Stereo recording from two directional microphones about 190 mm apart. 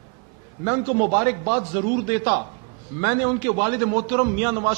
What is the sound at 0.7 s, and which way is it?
A man's voice, 25° right (ahead or behind).